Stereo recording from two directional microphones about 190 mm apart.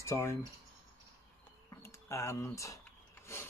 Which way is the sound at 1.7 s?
15° left (ahead or behind).